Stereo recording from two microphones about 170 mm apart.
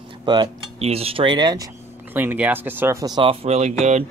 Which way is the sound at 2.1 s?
10° right (ahead or behind).